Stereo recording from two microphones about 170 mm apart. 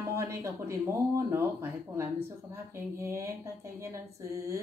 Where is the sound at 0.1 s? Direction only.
15° right (ahead or behind).